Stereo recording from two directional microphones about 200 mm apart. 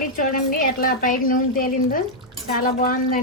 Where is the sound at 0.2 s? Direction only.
45° left (ahead or behind).